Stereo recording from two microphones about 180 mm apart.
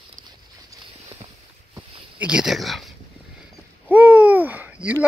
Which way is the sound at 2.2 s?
5° right (ahead or behind).